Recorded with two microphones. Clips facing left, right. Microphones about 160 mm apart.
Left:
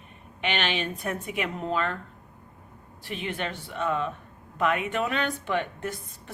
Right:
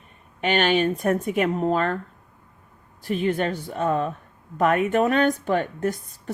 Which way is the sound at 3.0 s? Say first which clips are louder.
Right 9 dB; 40° right (ahead or behind).